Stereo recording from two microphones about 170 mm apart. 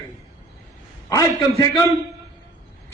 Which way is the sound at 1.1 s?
20° left (ahead or behind).